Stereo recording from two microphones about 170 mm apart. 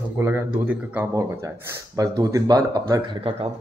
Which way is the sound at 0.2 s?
10° right (ahead or behind).